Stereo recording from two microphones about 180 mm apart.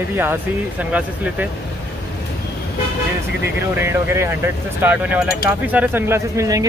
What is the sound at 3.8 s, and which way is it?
Speech, 10° right (ahead or behind).